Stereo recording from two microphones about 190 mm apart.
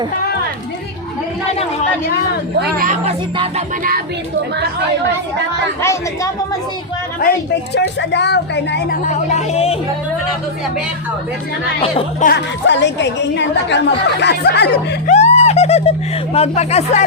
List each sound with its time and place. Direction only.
2.6 s speech: 45° right (ahead or behind)
5.8 s speech: 15° left (ahead or behind)
7.2 s speech: 55° left (ahead or behind)
9.0 s speech: 35° left (ahead or behind)
12.2 s speech: 60° left (ahead or behind)
15.0 s speech: 35° left (ahead or behind)